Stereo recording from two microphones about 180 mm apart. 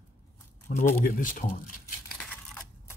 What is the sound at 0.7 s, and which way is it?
Speech, 40° left (ahead or behind).